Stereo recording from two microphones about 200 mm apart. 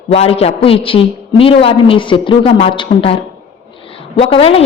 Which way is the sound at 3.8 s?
25° left (ahead or behind).